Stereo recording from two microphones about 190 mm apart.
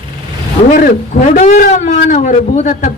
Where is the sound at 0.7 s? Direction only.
45° left (ahead or behind).